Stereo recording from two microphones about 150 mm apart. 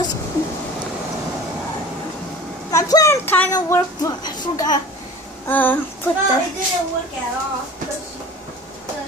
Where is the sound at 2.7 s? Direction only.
20° left (ahead or behind).